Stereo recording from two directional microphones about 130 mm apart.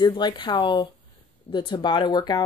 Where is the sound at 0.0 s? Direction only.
35° left (ahead or behind).